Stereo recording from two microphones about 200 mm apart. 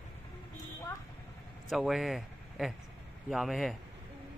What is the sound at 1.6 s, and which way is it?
A man's voice, centre (ahead or behind).